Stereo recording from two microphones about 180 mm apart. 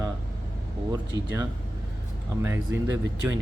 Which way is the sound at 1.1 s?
20° right (ahead or behind).